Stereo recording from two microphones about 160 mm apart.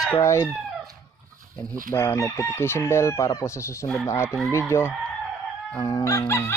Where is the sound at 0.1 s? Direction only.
20° left (ahead or behind).